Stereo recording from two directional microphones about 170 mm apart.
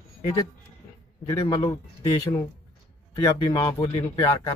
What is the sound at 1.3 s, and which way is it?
Speech, 20° left (ahead or behind).